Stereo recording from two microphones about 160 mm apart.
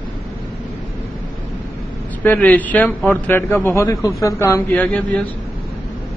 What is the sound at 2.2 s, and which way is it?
A man's voice, 10° left (ahead or behind).